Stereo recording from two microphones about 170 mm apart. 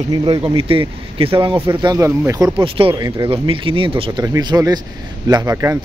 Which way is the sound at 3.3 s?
30° right (ahead or behind).